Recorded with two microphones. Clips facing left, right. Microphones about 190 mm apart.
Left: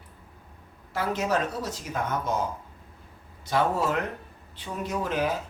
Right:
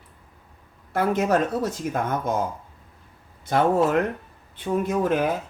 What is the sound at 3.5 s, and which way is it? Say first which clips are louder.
Speech: right 5 dB; 55° right (ahead or behind).